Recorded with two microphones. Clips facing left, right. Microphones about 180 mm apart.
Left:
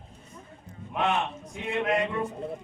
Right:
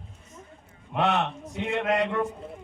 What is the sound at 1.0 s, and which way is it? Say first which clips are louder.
A man's voice: right 2 dB; 70° right (ahead or behind).